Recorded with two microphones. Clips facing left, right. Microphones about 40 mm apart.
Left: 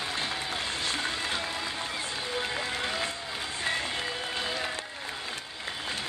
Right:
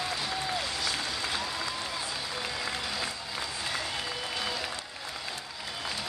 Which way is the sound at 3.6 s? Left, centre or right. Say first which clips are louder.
Left 5 dB; left.